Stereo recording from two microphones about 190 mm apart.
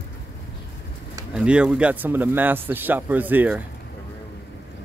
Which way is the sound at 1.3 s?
5° right (ahead or behind).